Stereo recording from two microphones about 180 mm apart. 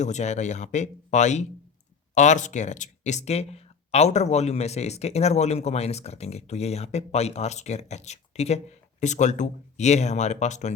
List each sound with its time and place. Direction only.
0.0 s speech: 40° left (ahead or behind)